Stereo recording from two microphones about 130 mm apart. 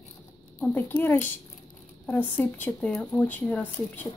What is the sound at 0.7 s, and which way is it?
Speech, 15° left (ahead or behind).